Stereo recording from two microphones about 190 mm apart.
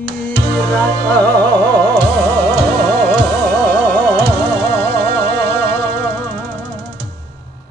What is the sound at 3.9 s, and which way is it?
Music, 5° left (ahead or behind).